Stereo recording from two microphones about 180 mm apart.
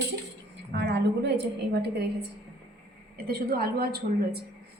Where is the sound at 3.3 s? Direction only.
60° right (ahead or behind).